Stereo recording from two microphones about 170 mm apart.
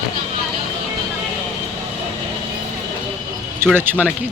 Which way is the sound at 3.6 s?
15° right (ahead or behind).